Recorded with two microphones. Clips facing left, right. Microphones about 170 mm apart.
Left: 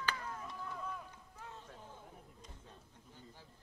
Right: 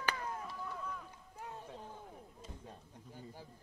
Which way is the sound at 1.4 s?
10° right (ahead or behind).